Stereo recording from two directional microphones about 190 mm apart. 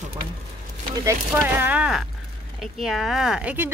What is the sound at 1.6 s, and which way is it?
Speech, 5° right (ahead or behind).